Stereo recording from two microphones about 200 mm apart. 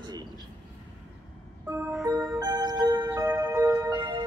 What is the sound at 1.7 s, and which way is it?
Music, 10° right (ahead or behind).